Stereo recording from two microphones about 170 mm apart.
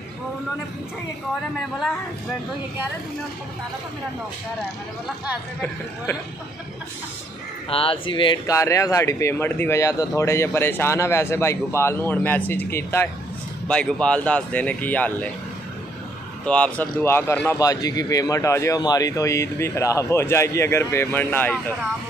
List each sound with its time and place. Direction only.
7.7 s speech: 30° left (ahead or behind); by 15.2 s 10° left (ahead or behind)
16.4 s speech: 5° left (ahead or behind)